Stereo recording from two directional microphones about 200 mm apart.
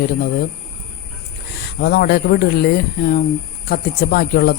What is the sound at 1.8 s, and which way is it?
Speech, 50° left (ahead or behind).